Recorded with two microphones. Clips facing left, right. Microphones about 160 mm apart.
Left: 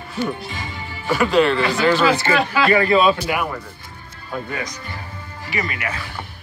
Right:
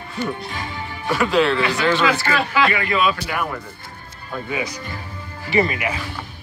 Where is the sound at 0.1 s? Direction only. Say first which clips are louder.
Left 2 dB; centre (ahead or behind).